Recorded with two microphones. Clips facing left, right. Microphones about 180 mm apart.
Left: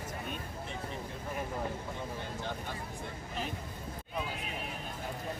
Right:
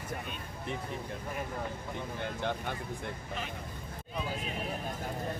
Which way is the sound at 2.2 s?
65° right (ahead or behind).